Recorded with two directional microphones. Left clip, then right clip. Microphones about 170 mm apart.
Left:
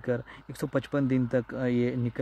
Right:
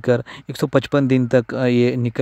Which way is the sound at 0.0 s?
45° right (ahead or behind).